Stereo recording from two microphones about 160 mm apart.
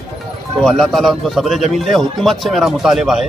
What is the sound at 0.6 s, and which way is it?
Speech, centre (ahead or behind).